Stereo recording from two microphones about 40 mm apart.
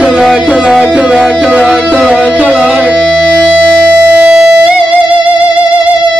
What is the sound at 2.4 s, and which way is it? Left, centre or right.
Music, right.